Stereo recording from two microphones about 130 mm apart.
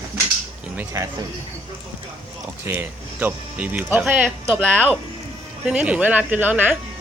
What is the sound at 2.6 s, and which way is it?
Speech, 20° right (ahead or behind).